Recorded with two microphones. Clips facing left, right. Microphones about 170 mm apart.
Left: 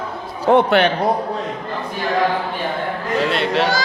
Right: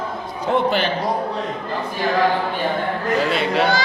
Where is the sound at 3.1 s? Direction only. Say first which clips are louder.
Left 2 dB; centre (ahead or behind).